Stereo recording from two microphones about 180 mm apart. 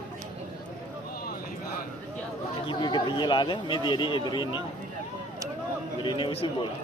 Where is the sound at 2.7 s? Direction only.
25° left (ahead or behind).